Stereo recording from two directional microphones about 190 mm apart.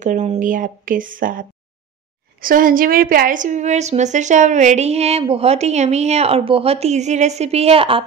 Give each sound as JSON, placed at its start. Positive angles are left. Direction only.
{"t": 0.0, "sound": "a woman's voice", "side_deg": -40}